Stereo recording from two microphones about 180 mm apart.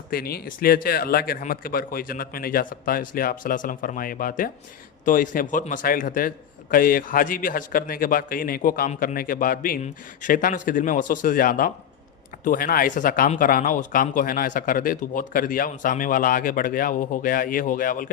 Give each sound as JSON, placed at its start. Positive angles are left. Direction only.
{"t": 0.1, "sound": "speech", "side_deg": 55}